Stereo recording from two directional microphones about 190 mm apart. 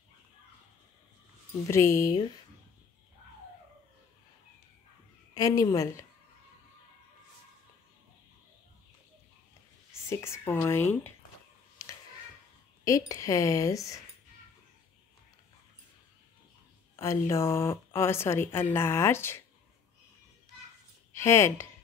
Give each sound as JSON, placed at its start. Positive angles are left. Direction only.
{"t": 1.5, "sound": "a woman's voice", "side_deg": 15}
{"t": 5.3, "sound": "a woman's voice", "side_deg": 20}
{"t": 10.4, "sound": "a woman's voice", "side_deg": 15}
{"t": 12.8, "sound": "a woman's voice", "side_deg": 15}
{"t": 16.9, "sound": "a woman's voice", "side_deg": 15}
{"t": 21.1, "sound": "speech", "side_deg": 15}